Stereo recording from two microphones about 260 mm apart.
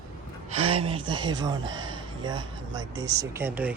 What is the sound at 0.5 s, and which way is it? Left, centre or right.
Speech, right.